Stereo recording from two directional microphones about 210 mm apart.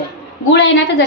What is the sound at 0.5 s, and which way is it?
Speech, 60° left (ahead or behind).